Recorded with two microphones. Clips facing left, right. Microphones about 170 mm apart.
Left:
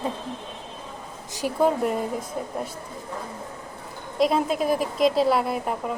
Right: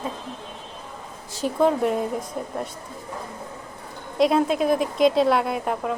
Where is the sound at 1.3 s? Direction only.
10° left (ahead or behind).